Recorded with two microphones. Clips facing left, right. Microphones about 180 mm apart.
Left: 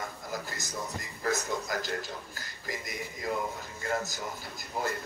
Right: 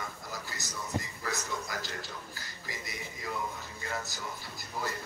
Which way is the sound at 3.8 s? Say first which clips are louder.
Left 6 dB; 50° left (ahead or behind).